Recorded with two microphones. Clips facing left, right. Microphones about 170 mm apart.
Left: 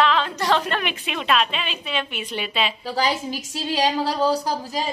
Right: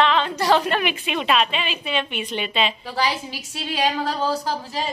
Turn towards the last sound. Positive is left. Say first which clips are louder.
# left 2 dB
turn(degrees=15)  # may be behind; listen again after turning